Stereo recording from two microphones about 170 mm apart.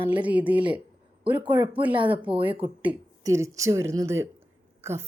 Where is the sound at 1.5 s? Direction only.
25° right (ahead or behind).